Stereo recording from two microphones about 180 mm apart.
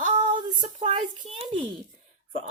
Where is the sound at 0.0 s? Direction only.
45° right (ahead or behind).